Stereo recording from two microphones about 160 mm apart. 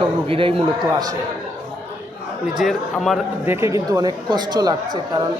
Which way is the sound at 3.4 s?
15° right (ahead or behind).